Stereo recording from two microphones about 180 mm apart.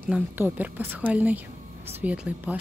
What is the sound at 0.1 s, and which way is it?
Speech, 10° right (ahead or behind).